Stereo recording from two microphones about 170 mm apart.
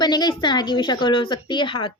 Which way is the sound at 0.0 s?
25° left (ahead or behind).